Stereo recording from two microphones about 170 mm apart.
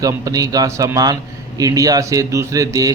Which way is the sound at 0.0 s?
20° right (ahead or behind).